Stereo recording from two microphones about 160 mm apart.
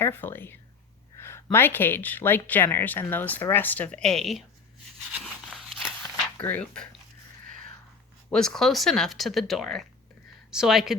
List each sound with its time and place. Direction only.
0.0 s speech: 15° left (ahead or behind)
4.9 s a sound: centre (ahead or behind)
6.3 s speech: 10° left (ahead or behind)
8.3 s speech: 5° left (ahead or behind)